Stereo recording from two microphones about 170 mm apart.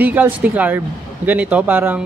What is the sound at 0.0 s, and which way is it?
Speech, 10° right (ahead or behind).